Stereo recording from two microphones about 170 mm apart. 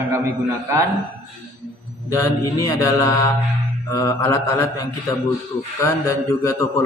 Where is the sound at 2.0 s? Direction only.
20° left (ahead or behind).